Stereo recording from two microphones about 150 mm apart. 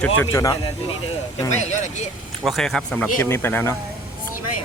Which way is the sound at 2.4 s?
Centre (ahead or behind).